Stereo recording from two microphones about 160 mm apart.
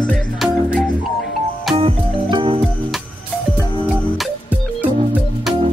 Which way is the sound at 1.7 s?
35° right (ahead or behind).